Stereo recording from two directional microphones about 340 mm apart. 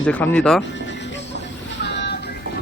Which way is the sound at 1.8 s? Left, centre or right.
Left.